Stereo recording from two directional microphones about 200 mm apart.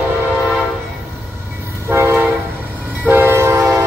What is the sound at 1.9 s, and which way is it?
Train, 10° right (ahead or behind).